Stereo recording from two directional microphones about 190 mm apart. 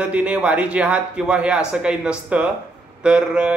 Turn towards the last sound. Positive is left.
turn(degrees=-5)  # may be behind; listen again after turning